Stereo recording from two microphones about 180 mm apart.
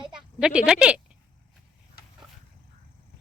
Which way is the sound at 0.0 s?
5° right (ahead or behind).